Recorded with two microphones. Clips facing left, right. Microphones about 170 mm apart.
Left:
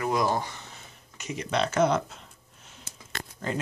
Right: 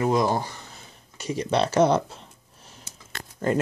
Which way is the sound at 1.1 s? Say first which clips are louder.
Right 5 dB; 35° right (ahead or behind).